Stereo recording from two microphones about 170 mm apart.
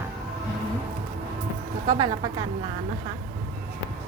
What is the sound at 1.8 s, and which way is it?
Speech, 25° right (ahead or behind).